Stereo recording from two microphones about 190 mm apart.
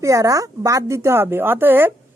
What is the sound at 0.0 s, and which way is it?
A woman's voice, 15° right (ahead or behind).